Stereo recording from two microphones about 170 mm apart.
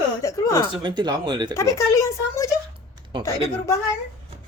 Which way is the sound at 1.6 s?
20° left (ahead or behind).